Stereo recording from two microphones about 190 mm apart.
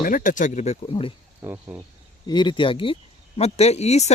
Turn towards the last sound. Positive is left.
turn(degrees=35)  # may be behind; listen again after turning